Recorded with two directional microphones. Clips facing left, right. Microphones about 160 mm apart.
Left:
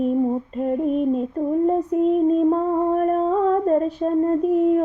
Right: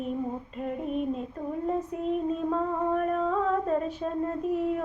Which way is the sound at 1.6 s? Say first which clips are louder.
Left 8 dB; 40° left (ahead or behind).